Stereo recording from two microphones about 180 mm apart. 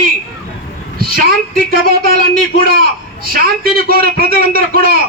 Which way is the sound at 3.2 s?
55° right (ahead or behind).